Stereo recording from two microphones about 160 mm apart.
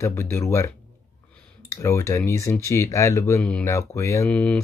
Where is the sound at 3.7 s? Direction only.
20° left (ahead or behind).